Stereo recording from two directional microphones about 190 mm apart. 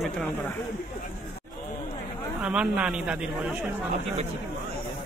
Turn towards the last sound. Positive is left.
turn(degrees=-5)  # may be behind; listen again after turning